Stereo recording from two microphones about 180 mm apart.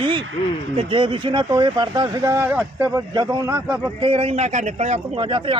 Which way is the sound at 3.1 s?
20° right (ahead or behind).